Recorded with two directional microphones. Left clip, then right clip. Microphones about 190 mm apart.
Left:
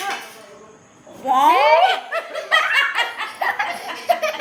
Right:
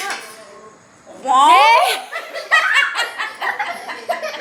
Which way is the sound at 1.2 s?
5° left (ahead or behind).